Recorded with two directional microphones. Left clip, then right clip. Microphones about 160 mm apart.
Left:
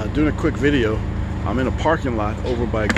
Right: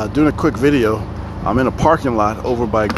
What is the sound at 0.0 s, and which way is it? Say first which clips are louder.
Speech: right 5 dB; 45° right (ahead or behind).